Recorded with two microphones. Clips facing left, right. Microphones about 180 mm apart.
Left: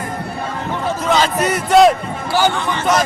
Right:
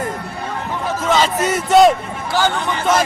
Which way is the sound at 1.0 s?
Centre (ahead or behind).